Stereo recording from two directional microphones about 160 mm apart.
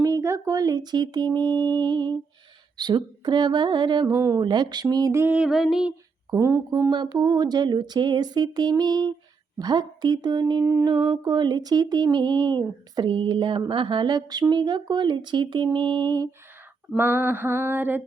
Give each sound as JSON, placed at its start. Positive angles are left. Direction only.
{"t": 0.0, "sound": "speech", "side_deg": -20}
{"t": 1.5, "sound": "music", "side_deg": 10}
{"t": 1.7, "sound": "speech", "side_deg": -30}
{"t": 6.3, "sound": "speech", "side_deg": -20}
{"t": 13.0, "sound": "a sound", "side_deg": -30}
{"t": 13.7, "sound": "speech", "side_deg": -30}
{"t": 17.0, "sound": "mantra", "side_deg": -15}